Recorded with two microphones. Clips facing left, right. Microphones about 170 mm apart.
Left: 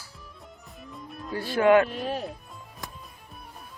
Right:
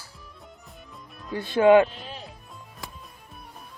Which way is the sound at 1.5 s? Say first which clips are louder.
Right 3 dB; 20° right (ahead or behind).